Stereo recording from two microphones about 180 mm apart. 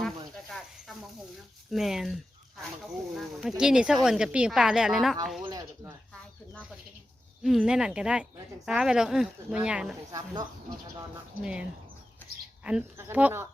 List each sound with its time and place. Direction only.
0.0 s snake: centre (ahead or behind)
1.7 s speech: centre (ahead or behind)
5.5 s a sound: 20° right (ahead or behind)
6.1 s bird: 5° left (ahead or behind)
7.4 s speech: 5° right (ahead or behind)
10.1 s speech: 20° right (ahead or behind)
11.4 s speech: 5° right (ahead or behind)